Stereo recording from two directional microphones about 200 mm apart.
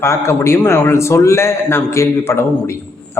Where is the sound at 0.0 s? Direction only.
15° left (ahead or behind).